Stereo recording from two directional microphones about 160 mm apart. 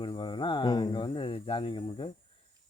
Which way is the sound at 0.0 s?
30° left (ahead or behind).